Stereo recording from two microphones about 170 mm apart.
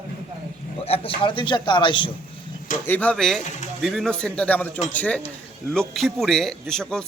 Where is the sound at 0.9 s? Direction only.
35° left (ahead or behind).